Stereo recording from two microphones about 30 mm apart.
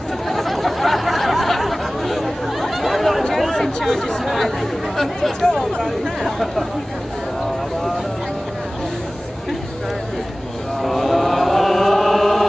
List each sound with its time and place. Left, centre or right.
0.3 s a sound: centre
3.6 s chatter: centre
5.4 s chatter: centre
10.8 s chant: centre